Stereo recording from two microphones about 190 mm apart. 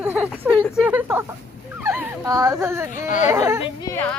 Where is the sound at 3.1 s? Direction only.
40° left (ahead or behind).